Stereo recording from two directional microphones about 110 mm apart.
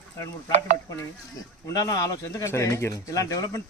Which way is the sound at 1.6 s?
35° left (ahead or behind).